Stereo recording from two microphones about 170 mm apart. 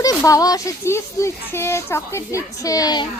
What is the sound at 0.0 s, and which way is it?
A child's voice, 20° left (ahead or behind).